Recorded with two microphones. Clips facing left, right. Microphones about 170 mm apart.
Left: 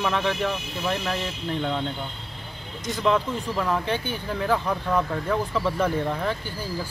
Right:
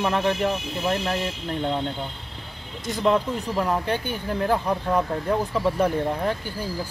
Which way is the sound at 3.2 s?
25° right (ahead or behind).